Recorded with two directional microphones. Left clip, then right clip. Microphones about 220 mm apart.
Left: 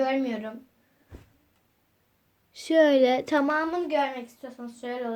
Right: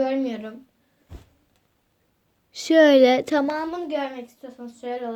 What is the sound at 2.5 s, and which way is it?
Speech, 25° right (ahead or behind).